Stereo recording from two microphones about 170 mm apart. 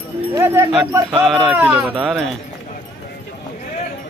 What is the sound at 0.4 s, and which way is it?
Speech, 15° right (ahead or behind).